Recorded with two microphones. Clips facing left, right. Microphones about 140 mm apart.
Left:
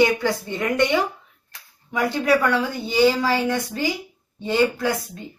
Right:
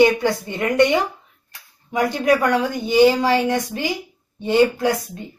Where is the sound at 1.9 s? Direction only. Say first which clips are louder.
Right 2 dB; 15° right (ahead or behind).